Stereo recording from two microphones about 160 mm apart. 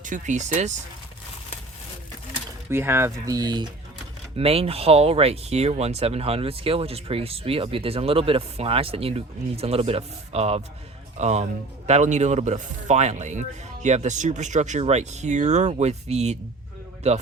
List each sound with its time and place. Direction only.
0.0 s speech: 50° right (ahead or behind)
2.6 s speech: 15° right (ahead or behind)
4.4 s speech: 40° right (ahead or behind)